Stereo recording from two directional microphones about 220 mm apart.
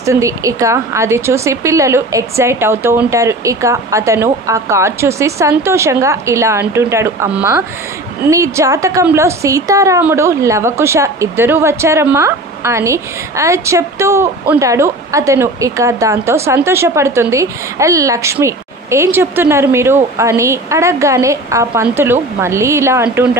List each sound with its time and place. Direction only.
0.0 s a woman's voice: 15° right (ahead or behind)